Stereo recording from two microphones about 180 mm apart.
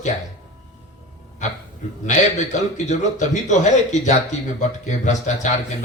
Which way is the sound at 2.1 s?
40° left (ahead or behind).